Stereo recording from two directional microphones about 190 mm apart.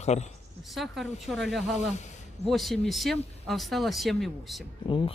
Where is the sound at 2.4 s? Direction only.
Centre (ahead or behind).